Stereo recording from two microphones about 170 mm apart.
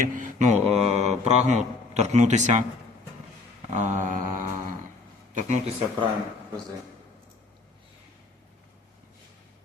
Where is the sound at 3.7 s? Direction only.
45° right (ahead or behind).